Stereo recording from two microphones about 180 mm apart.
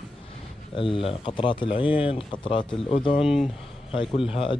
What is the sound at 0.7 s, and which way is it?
Speech, 30° left (ahead or behind).